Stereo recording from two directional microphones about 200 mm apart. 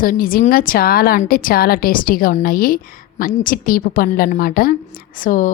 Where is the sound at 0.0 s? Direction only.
45° left (ahead or behind).